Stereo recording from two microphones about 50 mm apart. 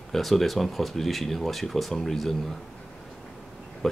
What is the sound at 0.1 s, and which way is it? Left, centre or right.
Speech, centre.